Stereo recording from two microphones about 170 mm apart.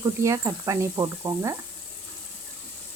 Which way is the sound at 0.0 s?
20° right (ahead or behind).